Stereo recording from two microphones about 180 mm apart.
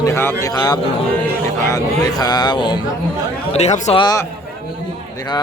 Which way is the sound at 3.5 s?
40° left (ahead or behind).